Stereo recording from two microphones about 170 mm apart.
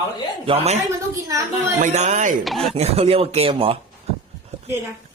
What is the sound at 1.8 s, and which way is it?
Speech, 45° right (ahead or behind).